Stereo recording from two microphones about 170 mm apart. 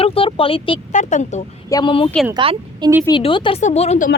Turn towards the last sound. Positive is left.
turn(degrees=40)  # may be behind; listen again after turning